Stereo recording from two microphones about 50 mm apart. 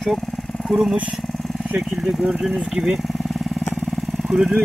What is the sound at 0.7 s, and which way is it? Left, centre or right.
Speech, centre.